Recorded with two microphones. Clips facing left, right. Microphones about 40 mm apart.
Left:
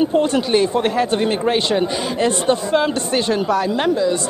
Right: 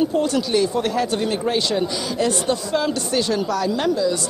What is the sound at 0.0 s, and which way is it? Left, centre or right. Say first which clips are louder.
Speech: left 3 dB; left.